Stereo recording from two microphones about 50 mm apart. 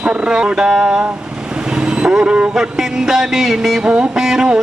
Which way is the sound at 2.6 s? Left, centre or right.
Centre.